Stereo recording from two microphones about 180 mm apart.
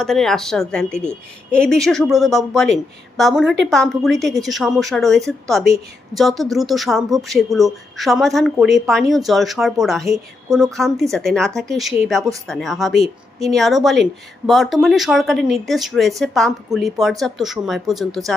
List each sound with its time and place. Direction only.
0.0 s speech: centre (ahead or behind)